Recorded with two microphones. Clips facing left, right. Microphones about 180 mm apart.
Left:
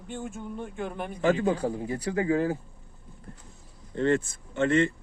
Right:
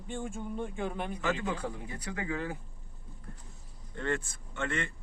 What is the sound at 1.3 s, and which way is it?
Speech, 35° left (ahead or behind).